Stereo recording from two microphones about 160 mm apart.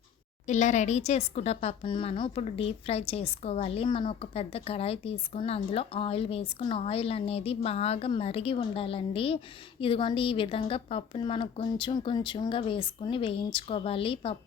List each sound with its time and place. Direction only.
0.4 s speech: 50° left (ahead or behind)